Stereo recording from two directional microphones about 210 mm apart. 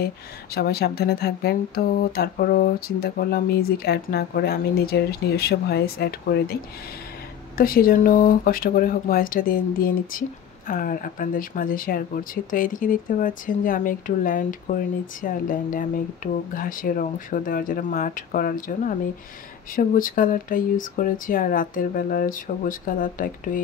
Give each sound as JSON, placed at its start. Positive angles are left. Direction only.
{"t": 0.6, "sound": "speech", "side_deg": 50}